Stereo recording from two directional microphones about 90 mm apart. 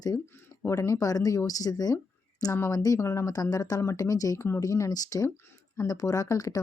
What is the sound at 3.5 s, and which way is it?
Speech, 40° left (ahead or behind).